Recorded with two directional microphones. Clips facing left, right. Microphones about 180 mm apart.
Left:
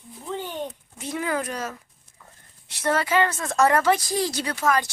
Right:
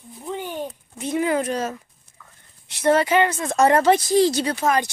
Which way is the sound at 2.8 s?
20° right (ahead or behind).